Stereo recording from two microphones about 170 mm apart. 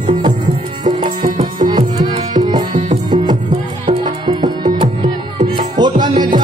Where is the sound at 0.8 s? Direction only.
50° right (ahead or behind).